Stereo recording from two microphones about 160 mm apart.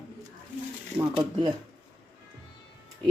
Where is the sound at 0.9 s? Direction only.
30° right (ahead or behind).